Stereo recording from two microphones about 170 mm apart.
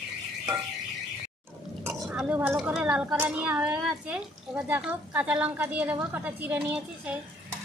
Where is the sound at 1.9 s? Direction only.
10° right (ahead or behind).